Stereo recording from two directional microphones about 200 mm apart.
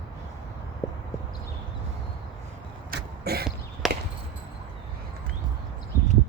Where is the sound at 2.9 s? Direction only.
50° right (ahead or behind).